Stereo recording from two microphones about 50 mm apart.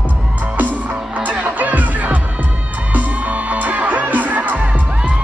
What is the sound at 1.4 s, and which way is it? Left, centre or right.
Music, right.